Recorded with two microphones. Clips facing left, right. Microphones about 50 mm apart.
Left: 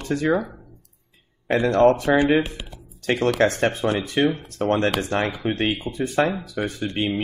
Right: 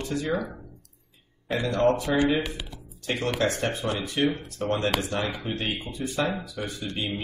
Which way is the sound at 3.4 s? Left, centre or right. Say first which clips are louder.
Left 6 dB; left.